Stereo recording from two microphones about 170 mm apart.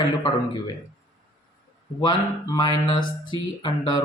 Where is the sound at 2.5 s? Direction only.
25° left (ahead or behind).